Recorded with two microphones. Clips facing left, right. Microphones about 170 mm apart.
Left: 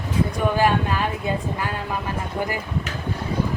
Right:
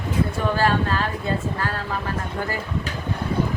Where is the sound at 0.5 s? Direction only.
15° left (ahead or behind).